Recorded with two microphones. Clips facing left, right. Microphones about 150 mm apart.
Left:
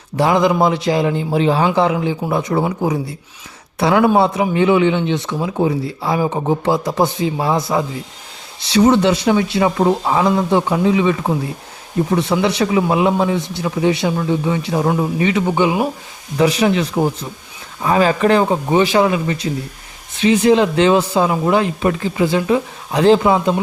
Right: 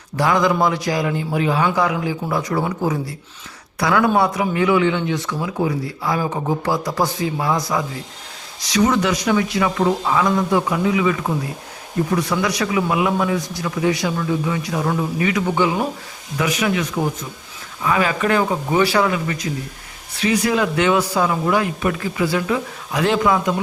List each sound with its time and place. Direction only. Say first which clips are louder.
0.2 s speech: left 3 dB; 20° left (ahead or behind)
16.4 s speech: left 6 dB; 30° left (ahead or behind)